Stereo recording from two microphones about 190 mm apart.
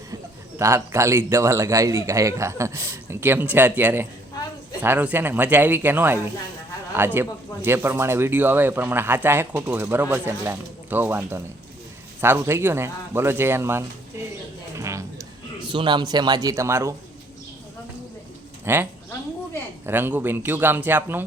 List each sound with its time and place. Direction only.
0.6 s speech: 15° right (ahead or behind)
14.8 s a sound: 15° right (ahead or behind)
18.6 s speech: 10° right (ahead or behind)